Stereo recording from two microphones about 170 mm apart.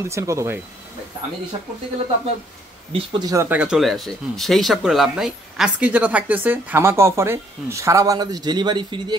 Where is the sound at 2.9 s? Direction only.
25° right (ahead or behind).